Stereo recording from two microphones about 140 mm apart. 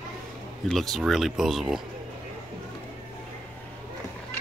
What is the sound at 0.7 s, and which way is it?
Speech, centre (ahead or behind).